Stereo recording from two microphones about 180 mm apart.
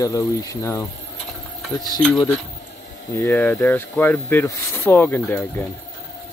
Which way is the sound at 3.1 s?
10° left (ahead or behind).